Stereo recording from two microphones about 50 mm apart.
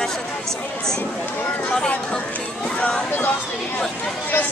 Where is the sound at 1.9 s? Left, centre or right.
Left.